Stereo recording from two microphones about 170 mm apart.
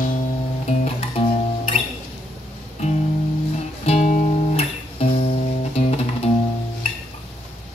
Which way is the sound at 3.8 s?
40° left (ahead or behind).